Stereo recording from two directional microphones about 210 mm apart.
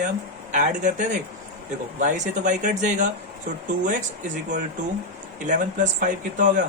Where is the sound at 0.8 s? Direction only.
35° right (ahead or behind).